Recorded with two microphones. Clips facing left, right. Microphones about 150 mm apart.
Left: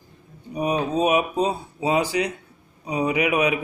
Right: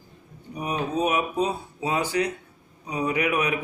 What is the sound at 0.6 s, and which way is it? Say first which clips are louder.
Speech: left 4 dB; 20° left (ahead or behind).